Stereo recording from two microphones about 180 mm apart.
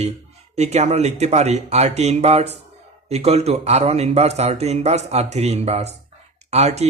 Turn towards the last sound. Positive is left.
turn(degrees=-35)  # may be behind; listen again after turning